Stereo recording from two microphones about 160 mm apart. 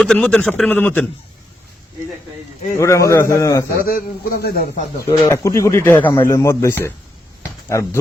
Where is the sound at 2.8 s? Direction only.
20° left (ahead or behind).